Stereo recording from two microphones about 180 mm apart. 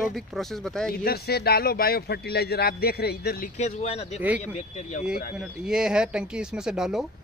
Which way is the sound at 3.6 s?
35° left (ahead or behind).